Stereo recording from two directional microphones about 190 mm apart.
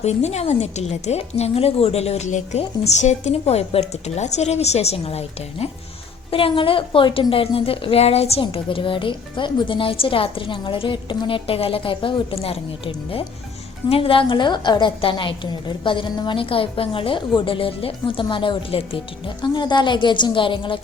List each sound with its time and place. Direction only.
0.0 s a woman's voice: 35° left (ahead or behind)